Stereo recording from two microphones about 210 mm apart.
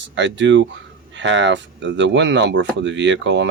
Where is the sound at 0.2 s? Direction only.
60° right (ahead or behind).